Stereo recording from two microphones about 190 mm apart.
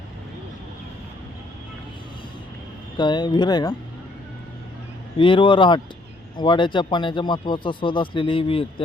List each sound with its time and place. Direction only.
3.0 s speech: 25° left (ahead or behind)
5.1 s speech: 25° left (ahead or behind)